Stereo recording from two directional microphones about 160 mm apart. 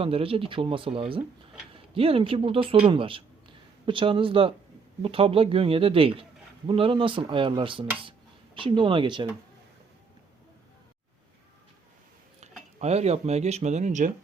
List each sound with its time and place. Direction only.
0.0 s speech: 35° right (ahead or behind)
12.8 s speech: 40° right (ahead or behind)